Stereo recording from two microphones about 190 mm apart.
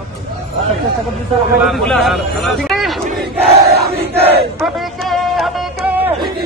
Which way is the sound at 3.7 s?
55° right (ahead or behind).